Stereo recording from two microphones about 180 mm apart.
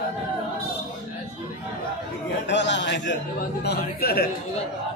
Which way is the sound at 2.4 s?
80° left.